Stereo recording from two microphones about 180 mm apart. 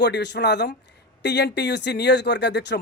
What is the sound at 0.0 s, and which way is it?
Speech, 70° left (ahead or behind).